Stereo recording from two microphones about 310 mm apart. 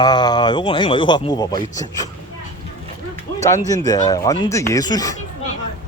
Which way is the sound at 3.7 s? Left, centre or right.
Centre.